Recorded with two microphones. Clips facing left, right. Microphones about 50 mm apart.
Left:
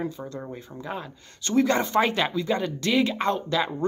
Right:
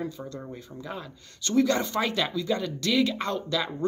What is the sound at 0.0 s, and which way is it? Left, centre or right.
Speech, left.